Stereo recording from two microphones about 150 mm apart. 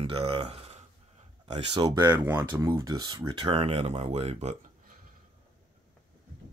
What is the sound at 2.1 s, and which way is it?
Speech, 15° right (ahead or behind).